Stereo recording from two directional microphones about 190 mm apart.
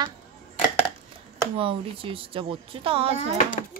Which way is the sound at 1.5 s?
30° right (ahead or behind).